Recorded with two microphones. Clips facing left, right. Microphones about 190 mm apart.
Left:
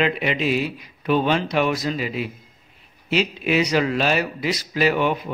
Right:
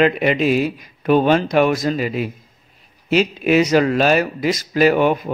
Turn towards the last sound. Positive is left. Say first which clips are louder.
# right 6 dB
turn(degrees=-45)  # may be behind; listen again after turning